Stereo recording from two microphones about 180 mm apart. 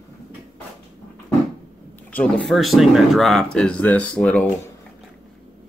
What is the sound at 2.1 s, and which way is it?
Speech, 5° left (ahead or behind).